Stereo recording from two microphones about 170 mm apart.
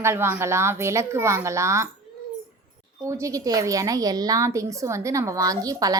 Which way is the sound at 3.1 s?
20° right (ahead or behind).